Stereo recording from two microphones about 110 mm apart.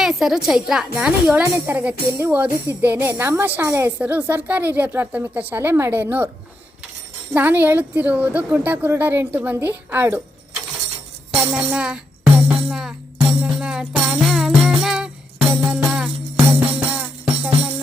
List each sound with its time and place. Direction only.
0.0 s a woman's voice: 5° right (ahead or behind)
1.3 s a woman's voice: 15° right (ahead or behind)
7.3 s a woman's voice: 15° right (ahead or behind)
11.3 s music: 5° right (ahead or behind)
16.5 s music: 15° right (ahead or behind)